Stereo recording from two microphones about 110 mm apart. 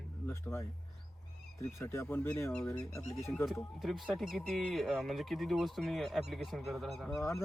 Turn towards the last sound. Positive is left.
turn(degrees=0)  # may be behind; listen again after turning